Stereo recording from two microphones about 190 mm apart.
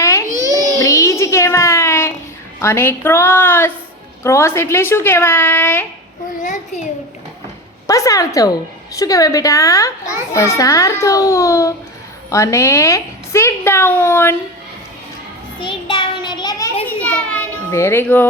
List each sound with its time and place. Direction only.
0.0 s babbling: 15° left (ahead or behind)
0.8 s music: 15° left (ahead or behind)
2.6 s a woman's voice: 10° left (ahead or behind)
7.9 s a woman's voice: 15° left (ahead or behind)
15.6 s child singing: 25° left (ahead or behind)
17.0 s children playing: 10° left (ahead or behind)